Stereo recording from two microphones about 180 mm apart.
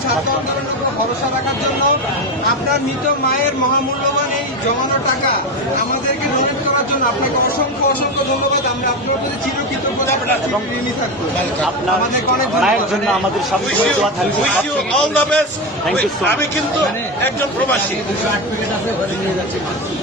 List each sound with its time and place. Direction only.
12.5 s a man's voice: centre (ahead or behind)
15.1 s speech: 5° left (ahead or behind)